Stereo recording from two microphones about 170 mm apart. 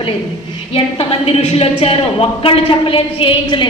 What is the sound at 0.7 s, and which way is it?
A woman's voice, 35° left (ahead or behind).